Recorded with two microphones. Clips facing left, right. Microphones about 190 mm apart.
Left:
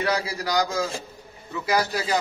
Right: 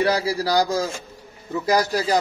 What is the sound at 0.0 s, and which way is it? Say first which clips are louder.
A man's voice: right 5 dB; 35° right (ahead or behind).